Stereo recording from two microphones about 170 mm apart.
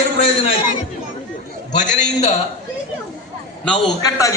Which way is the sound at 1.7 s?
45° left (ahead or behind).